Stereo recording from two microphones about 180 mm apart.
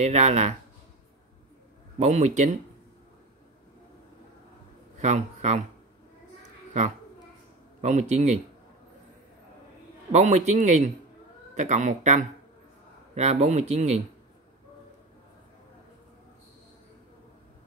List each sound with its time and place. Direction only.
0.0 s speech: 40° right (ahead or behind)
2.0 s speech: 40° right (ahead or behind)
4.9 s a man's voice: 40° right (ahead or behind)
7.8 s speech: 40° right (ahead or behind)
10.1 s speech: 40° right (ahead or behind)